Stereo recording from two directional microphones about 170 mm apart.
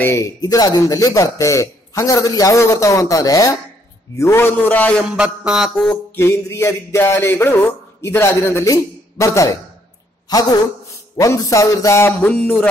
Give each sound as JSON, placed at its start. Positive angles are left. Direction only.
{"t": 0.0, "sound": "speech", "side_deg": 15}
{"t": 4.2, "sound": "mantra", "side_deg": 15}
{"t": 5.1, "sound": "mantra", "side_deg": -5}
{"t": 11.1, "sound": "mantra", "side_deg": 20}